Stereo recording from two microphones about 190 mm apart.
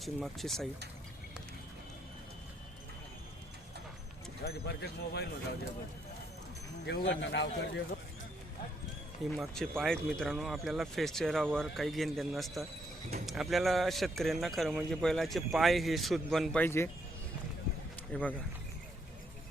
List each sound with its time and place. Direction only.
0.0 s speech: centre (ahead or behind)
4.4 s speech: 60° left (ahead or behind)
6.8 s speech: 65° left (ahead or behind)
9.3 s speech: 5° left (ahead or behind)
18.1 s speech: 5° left (ahead or behind)